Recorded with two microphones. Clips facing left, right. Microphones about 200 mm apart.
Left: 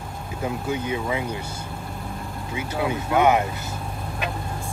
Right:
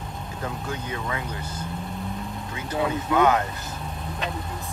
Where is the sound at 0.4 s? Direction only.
10° left (ahead or behind).